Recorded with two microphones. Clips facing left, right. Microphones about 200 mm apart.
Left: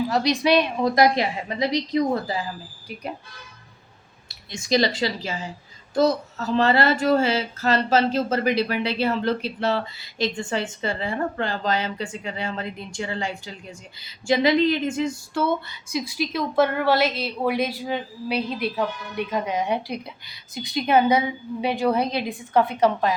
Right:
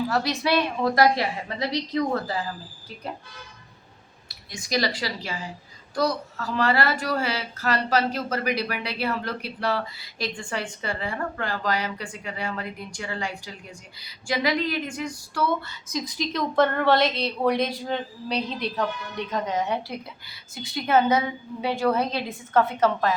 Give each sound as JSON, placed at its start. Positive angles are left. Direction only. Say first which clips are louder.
{"t": 0.1, "sound": "a woman's voice", "louder": "left 4 dB", "side_deg": 15}
{"t": 4.3, "sound": "speech", "louder": "left 6 dB", "side_deg": 25}
{"t": 15.9, "sound": "a woman's voice", "louder": "left 3 dB", "side_deg": 10}